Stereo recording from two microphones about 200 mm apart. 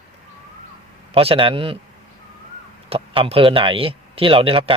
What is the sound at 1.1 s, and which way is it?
Speech, 25° right (ahead or behind).